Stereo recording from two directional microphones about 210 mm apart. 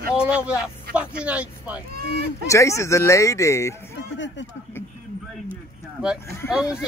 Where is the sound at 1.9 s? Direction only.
45° right (ahead or behind).